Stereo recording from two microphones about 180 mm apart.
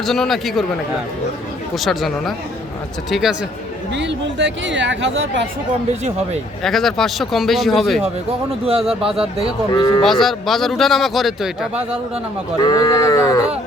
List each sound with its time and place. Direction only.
0.0 s a man's voice: centre (ahead or behind)
1.7 s a man's voice: centre (ahead or behind)
3.9 s speech: 80° right
6.6 s a man's voice: centre (ahead or behind)
8.6 s speech: 30° right (ahead or behind)
9.7 s livestock: 25° left (ahead or behind)
10.1 s a man's voice: centre (ahead or behind)
12.6 s livestock: 20° left (ahead or behind)